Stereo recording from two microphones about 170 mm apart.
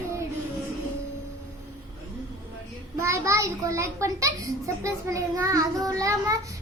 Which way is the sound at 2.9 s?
15° right (ahead or behind).